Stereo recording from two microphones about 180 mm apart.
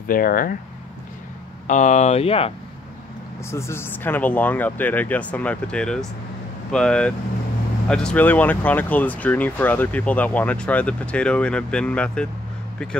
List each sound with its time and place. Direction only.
0.1 s speech: 50° left (ahead or behind)
1.7 s speech: 40° left (ahead or behind)
3.4 s speech: 15° left (ahead or behind)